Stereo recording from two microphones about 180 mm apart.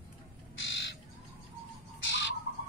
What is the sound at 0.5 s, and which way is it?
Bird, 85° left.